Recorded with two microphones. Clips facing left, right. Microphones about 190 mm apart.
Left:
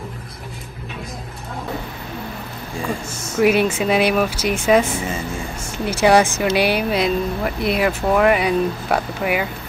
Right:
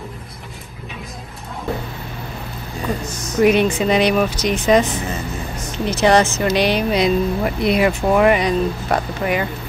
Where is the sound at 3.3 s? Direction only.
5° left (ahead or behind).